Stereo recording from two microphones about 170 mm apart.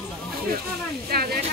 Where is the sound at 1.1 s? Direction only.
65° right (ahead or behind).